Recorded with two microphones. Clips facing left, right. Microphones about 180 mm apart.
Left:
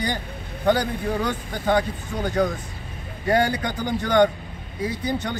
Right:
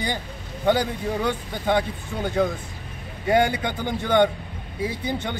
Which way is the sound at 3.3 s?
10° right (ahead or behind).